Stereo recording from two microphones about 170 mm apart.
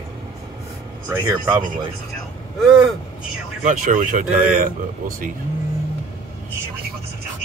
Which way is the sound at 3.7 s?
50° right (ahead or behind).